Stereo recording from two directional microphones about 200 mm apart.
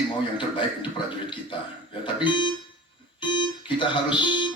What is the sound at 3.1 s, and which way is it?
Music, 25° left (ahead or behind).